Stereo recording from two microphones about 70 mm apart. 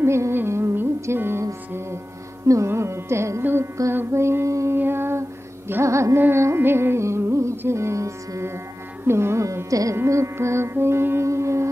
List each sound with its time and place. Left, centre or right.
0.0 s music: right
2.4 s carnatic music: right
3.9 s female singing: right
4.7 s music: right
5.7 s carnatic music: right
6.1 s music: right
9.0 s carnatic music: right
9.9 s music: right